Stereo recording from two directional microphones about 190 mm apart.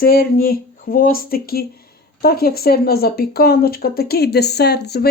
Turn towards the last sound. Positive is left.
turn(degrees=60)  # may be behind; listen again after turning